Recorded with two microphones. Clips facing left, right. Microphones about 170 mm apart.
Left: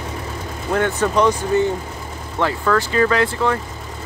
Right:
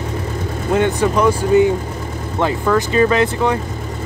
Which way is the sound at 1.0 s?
10° right (ahead or behind).